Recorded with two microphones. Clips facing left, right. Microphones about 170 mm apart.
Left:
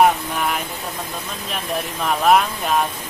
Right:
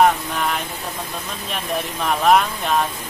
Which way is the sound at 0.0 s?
5° left (ahead or behind).